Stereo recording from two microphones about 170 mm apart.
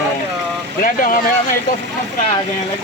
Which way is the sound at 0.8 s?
55° left (ahead or behind).